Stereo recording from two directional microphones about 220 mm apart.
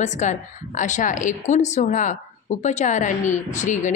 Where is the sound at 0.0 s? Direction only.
35° left (ahead or behind).